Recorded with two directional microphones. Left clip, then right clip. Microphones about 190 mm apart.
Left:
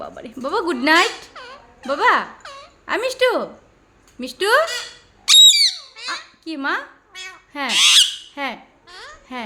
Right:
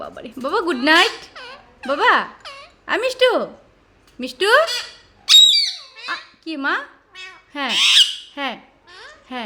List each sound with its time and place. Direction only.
0.0 s speech: 5° right (ahead or behind)
1.3 s a sound: 5° left (ahead or behind)
1.9 s speech: 10° right (ahead or behind)
2.4 s wail: centre (ahead or behind)
2.8 s speech: 10° right (ahead or behind)
5.2 s squeak: 40° left (ahead or behind)
6.4 s speech: 10° right (ahead or behind)
7.1 s cat: 15° left (ahead or behind)
7.7 s owl: 15° left (ahead or behind)
8.4 s speech: 10° right (ahead or behind)
8.9 s babbling: 15° left (ahead or behind)